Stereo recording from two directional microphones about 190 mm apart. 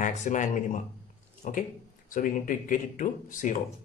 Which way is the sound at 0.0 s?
40° left (ahead or behind).